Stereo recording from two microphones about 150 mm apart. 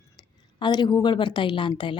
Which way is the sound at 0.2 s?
30° left (ahead or behind).